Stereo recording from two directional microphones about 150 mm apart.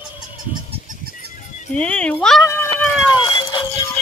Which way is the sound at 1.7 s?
10° left (ahead or behind).